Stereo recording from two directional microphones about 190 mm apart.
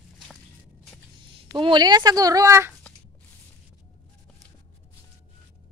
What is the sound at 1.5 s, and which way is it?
Speech, 20° right (ahead or behind).